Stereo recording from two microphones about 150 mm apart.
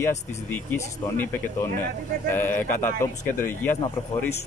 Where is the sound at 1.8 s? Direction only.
15° left (ahead or behind).